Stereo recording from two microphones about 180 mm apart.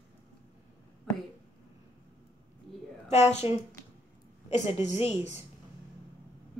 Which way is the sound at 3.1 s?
35° left (ahead or behind).